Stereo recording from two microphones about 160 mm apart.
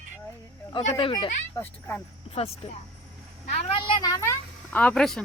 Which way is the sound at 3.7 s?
30° left (ahead or behind).